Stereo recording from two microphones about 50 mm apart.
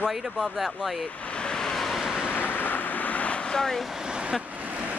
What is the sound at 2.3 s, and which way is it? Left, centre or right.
Vehicle, left.